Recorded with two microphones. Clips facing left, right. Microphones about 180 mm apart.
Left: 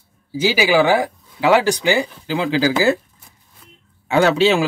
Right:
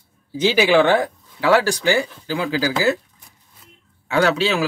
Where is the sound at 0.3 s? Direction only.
5° left (ahead or behind); by 3.0 s 25° left (ahead or behind).